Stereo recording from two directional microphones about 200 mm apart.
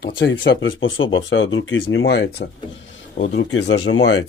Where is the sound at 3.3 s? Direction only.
65° left (ahead or behind).